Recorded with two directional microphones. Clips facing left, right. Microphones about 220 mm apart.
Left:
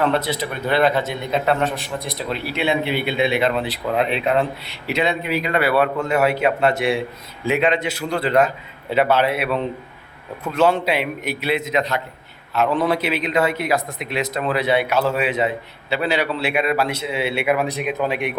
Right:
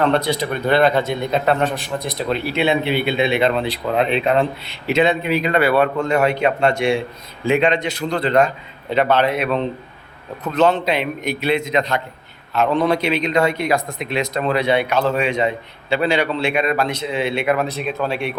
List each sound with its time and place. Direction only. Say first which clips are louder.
0.0 s a man's voice: right 2 dB; 5° left (ahead or behind)
2.6 s speech: right 1 dB; 25° right (ahead or behind)
3.3 s a man's voice: right 2 dB; 5° left (ahead or behind)
5.6 s a man's voice: right 2 dB; 5° left (ahead or behind)